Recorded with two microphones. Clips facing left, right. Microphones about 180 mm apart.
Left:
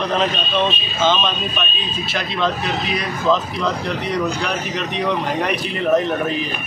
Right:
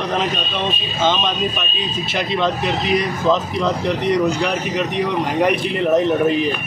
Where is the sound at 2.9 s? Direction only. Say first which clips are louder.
Right 1 dB; 20° right (ahead or behind).